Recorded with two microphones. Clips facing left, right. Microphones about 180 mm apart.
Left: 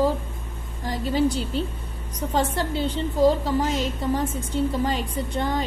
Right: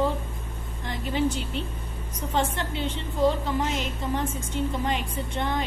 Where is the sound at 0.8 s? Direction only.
35° left (ahead or behind).